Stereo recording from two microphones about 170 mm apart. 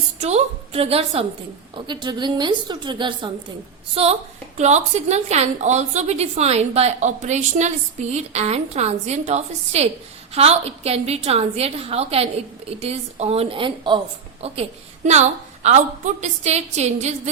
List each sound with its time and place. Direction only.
0.2 s a woman's voice: 40° right (ahead or behind)